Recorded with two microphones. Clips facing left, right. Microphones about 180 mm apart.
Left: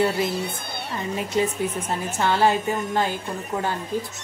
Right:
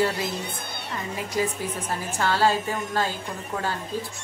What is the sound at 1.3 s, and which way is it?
A woman's voice, 25° left (ahead or behind).